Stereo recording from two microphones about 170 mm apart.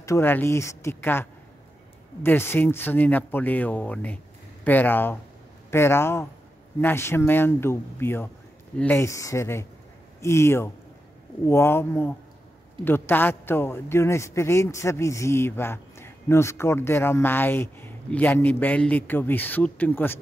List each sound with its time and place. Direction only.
0.0 s a man's voice: 15° left (ahead or behind)